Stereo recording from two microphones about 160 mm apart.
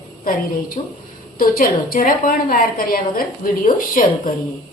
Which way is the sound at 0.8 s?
45° left (ahead or behind).